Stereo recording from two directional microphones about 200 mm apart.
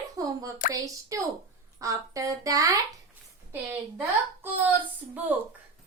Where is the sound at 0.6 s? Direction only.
40° left (ahead or behind).